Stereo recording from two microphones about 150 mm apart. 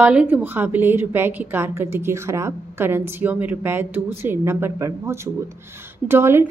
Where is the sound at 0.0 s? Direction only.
10° right (ahead or behind).